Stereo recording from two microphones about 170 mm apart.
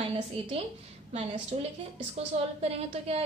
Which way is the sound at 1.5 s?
40° right (ahead or behind).